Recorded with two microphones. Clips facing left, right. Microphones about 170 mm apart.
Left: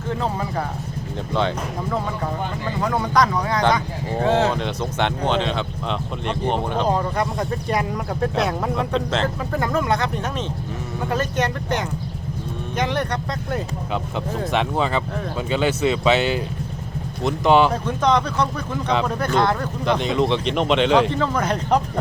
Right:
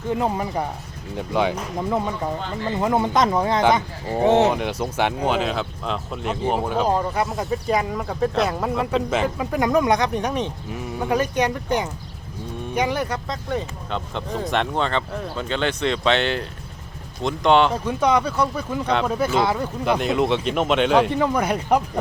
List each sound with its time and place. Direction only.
0.1 s speech: 15° right (ahead or behind)
2.8 s speech: 20° right (ahead or behind)
4.6 s speech: 10° right (ahead or behind)
17.8 s speech: 10° right (ahead or behind)
21.1 s speech: 15° right (ahead or behind)